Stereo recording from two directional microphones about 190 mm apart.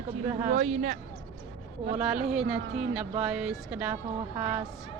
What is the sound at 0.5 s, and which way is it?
Speech, 35° right (ahead or behind).